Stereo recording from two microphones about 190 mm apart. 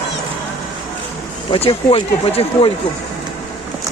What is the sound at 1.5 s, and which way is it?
Speech, 25° left (ahead or behind).